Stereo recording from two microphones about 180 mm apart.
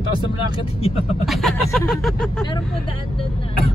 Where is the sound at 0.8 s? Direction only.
35° left (ahead or behind).